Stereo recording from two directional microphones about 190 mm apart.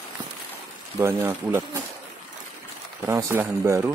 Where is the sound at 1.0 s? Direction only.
15° right (ahead or behind).